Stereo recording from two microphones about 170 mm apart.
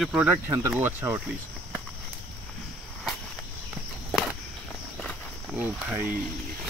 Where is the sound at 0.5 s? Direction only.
20° right (ahead or behind).